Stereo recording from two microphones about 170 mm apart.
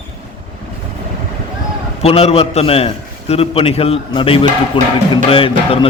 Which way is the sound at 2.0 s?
35° left (ahead or behind).